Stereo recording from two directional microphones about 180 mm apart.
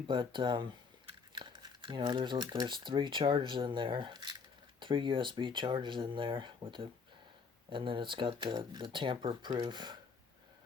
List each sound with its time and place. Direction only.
0.1 s speech: 25° right (ahead or behind)